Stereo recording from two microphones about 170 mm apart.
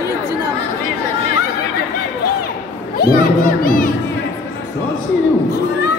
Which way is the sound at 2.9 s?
60° left (ahead or behind).